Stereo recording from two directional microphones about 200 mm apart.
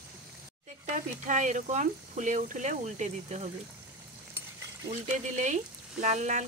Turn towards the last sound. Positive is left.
turn(degrees=-35)  # may be behind; listen again after turning